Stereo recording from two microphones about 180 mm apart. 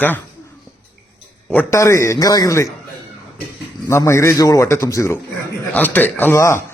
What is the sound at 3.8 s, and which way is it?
A man's voice, 15° left (ahead or behind).